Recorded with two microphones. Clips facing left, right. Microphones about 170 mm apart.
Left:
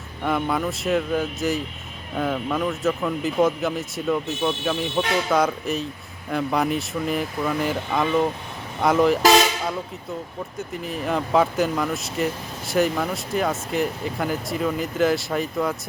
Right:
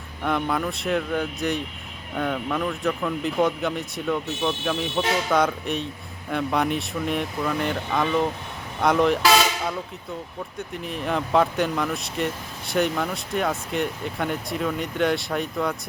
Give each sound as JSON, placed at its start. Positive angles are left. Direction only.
{"t": 0.2, "sound": "speech", "side_deg": 0}
{"t": 10.6, "sound": "speech", "side_deg": 0}